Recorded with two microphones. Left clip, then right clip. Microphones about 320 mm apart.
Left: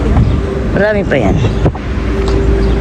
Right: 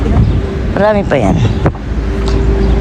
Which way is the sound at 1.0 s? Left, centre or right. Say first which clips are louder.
Right 1 dB; right.